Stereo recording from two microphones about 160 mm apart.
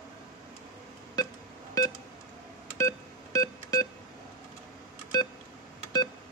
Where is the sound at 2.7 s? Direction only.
20° left (ahead or behind).